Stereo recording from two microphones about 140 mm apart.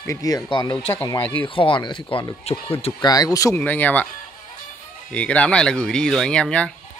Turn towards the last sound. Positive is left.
turn(degrees=5)  # may be behind; listen again after turning